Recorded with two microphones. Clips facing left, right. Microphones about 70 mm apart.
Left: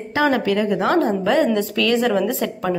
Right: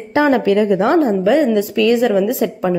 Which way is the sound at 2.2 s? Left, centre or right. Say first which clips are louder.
Right 5 dB; centre.